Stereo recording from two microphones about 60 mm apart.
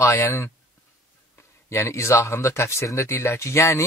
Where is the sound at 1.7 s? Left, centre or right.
Left.